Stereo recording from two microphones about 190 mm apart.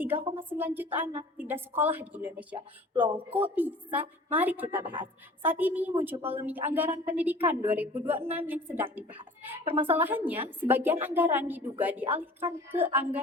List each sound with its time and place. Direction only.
0.0 s a woman's voice: 10° right (ahead or behind)
2.9 s speech: 25° right (ahead or behind)
3.3 s a woman's voice: 10° right (ahead or behind)
4.8 s speech: 25° right (ahead or behind)
5.4 s a woman's voice: 10° right (ahead or behind)